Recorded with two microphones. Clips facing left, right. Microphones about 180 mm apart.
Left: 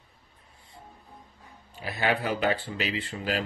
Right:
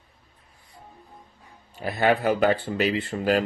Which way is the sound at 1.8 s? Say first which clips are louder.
Right 6 dB; 50° right (ahead or behind).